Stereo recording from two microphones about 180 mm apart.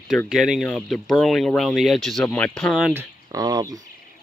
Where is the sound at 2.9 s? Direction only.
15° right (ahead or behind).